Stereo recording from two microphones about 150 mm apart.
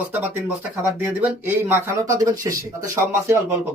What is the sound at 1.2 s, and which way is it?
Speech, 15° right (ahead or behind).